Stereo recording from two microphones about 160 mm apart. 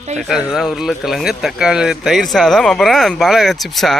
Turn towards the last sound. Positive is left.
turn(degrees=0)  # may be behind; listen again after turning